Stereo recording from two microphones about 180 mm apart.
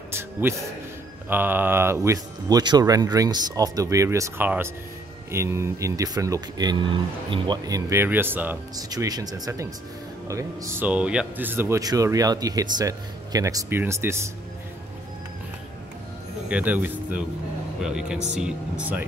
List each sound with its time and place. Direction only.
0.1 s a sound: 15° right (ahead or behind)
1.3 s speech: 10° right (ahead or behind)
16.4 s speech: 10° right (ahead or behind)